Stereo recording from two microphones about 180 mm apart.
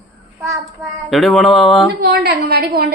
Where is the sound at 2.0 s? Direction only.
65° right (ahead or behind).